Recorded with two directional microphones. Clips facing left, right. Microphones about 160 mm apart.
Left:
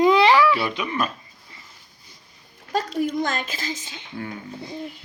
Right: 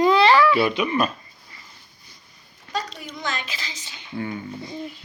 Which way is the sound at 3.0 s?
50° left (ahead or behind).